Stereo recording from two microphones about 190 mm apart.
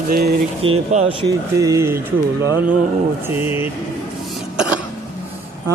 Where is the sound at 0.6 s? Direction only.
30° right (ahead or behind).